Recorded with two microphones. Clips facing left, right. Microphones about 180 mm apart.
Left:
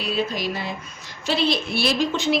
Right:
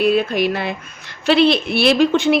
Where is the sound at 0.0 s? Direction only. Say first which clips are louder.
Right 9 dB; 60° right (ahead or behind).